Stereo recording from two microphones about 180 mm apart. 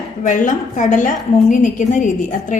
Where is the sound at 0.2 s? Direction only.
45° left (ahead or behind).